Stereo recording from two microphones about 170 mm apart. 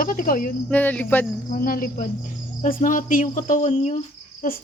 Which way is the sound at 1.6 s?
55° left (ahead or behind).